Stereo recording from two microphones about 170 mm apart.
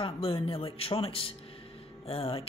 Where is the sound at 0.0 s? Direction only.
35° left (ahead or behind).